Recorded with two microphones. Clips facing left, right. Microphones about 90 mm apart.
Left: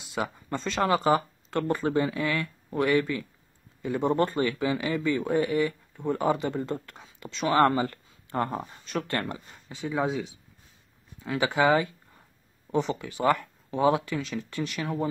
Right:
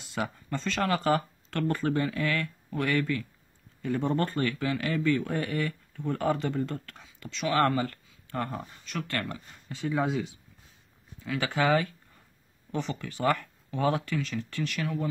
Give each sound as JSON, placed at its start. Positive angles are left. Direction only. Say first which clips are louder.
{"t": 0.0, "sound": "a sound", "louder": "left 2 dB", "side_deg": 5}
{"t": 0.5, "sound": "speech", "louder": "left 4 dB", "side_deg": 20}
{"t": 9.7, "sound": "speech", "louder": "even", "side_deg": 5}
{"t": 11.3, "sound": "speech", "louder": "left 3 dB", "side_deg": 15}